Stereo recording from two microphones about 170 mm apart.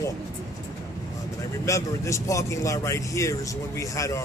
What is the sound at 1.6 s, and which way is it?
A man's voice, 15° left (ahead or behind).